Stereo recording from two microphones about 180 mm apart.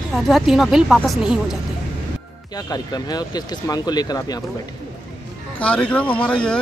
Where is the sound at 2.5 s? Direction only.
20° left (ahead or behind).